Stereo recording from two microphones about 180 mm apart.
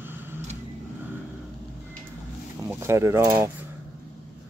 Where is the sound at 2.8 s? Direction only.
15° right (ahead or behind).